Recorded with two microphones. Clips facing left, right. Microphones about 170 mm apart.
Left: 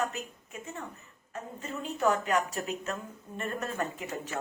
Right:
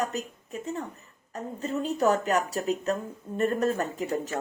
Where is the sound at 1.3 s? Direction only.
35° right (ahead or behind).